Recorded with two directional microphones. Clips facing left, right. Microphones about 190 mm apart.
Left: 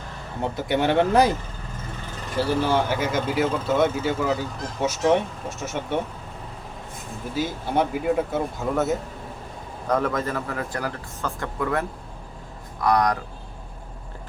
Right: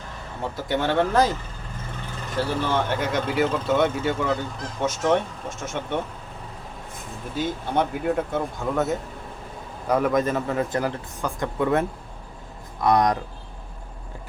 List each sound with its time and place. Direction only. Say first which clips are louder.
0.4 s speech: left 2 dB; 15° left (ahead or behind)
2.4 s speech: left 2 dB; 10° left (ahead or behind)
7.3 s speech: even; 5° left (ahead or behind)
9.8 s speech: right 3 dB; 10° right (ahead or behind)